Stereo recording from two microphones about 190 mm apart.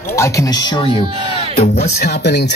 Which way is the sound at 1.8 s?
60° left (ahead or behind).